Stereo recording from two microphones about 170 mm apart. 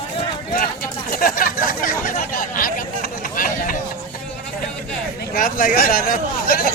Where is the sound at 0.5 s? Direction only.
55° left (ahead or behind).